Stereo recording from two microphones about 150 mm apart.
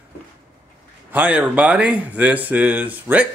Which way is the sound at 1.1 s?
10° right (ahead or behind).